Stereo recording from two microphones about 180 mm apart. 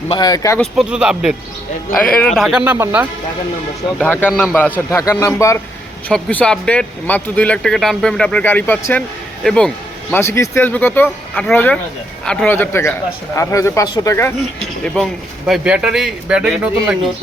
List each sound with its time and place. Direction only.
0.1 s speech: 25° left (ahead or behind)
0.6 s speech: 5° right (ahead or behind)
3.9 s speech: 5° left (ahead or behind)
4.5 s speech: 10° left (ahead or behind)
6.1 s speech: 5° left (ahead or behind)
14.9 s speech: centre (ahead or behind)